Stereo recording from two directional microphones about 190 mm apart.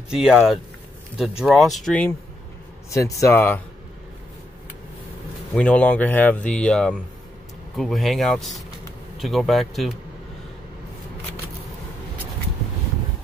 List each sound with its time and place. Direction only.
0.1 s speech: 5° right (ahead or behind)
2.9 s speech: 15° left (ahead or behind)
5.5 s speech: 5° left (ahead or behind)